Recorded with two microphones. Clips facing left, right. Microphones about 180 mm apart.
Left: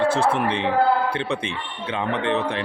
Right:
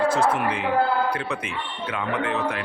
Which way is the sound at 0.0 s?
30° left (ahead or behind).